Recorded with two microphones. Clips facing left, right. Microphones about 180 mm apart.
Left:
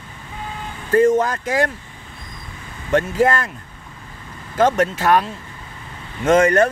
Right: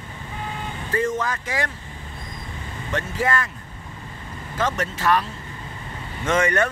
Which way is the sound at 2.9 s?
45° left (ahead or behind).